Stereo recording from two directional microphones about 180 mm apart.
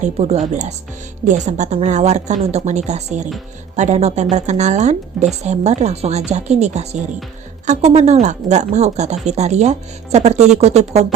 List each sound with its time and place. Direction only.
0.0 s a woman's voice: 40° right (ahead or behind)